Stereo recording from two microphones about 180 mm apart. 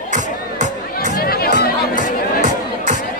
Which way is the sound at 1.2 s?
55° left (ahead or behind).